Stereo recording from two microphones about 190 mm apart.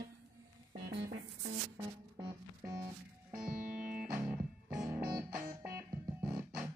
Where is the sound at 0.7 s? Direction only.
60° right (ahead or behind).